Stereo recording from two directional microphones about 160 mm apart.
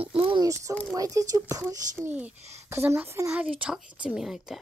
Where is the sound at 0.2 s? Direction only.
30° right (ahead or behind).